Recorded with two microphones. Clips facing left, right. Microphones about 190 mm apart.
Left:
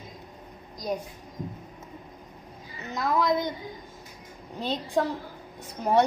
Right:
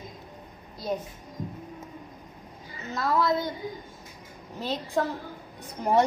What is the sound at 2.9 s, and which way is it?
Speech, 15° left (ahead or behind).